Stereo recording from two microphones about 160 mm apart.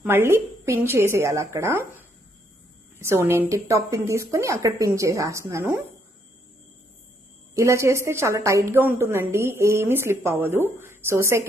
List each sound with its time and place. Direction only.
0.0 s a woman's voice: 15° right (ahead or behind)
7.5 s a woman's voice: 20° right (ahead or behind)